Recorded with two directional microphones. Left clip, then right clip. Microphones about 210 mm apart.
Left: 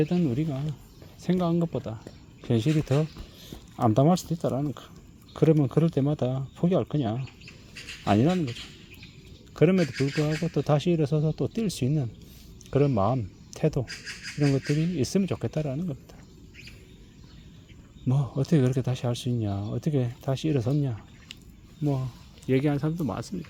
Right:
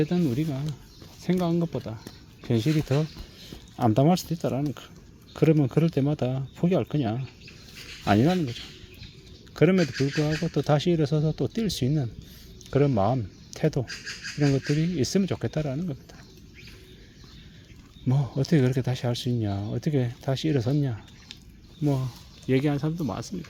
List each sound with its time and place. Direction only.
0.0 s speech: centre (ahead or behind)
9.6 s speech: centre (ahead or behind)
18.0 s speech: centre (ahead or behind)
21.8 s speech: 15° right (ahead or behind)
22.4 s speech: centre (ahead or behind)